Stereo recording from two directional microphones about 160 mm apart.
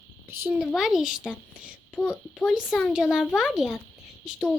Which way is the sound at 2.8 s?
Centre (ahead or behind).